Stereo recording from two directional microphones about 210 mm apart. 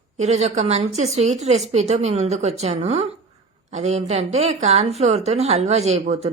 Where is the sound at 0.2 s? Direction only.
30° right (ahead or behind).